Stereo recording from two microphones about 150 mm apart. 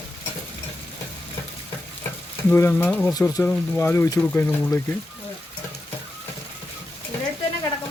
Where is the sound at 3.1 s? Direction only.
25° left (ahead or behind).